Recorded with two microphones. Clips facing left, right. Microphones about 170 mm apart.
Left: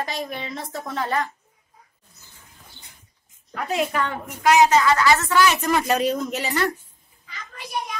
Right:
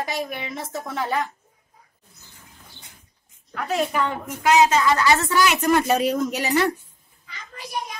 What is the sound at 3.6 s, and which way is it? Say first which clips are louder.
Speech: even; centre (ahead or behind).